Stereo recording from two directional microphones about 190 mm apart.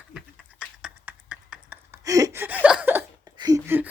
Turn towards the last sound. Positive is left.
turn(degrees=-10)  # may be behind; listen again after turning